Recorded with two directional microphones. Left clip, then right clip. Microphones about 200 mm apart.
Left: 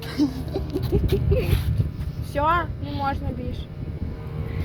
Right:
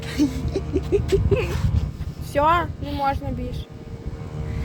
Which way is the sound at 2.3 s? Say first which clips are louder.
Right 3 dB; 40° right (ahead or behind).